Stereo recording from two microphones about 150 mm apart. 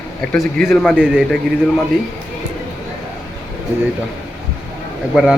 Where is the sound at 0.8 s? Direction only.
5° right (ahead or behind).